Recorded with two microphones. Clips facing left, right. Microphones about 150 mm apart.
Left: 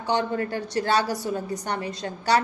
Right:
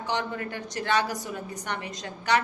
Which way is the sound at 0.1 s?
35° left (ahead or behind).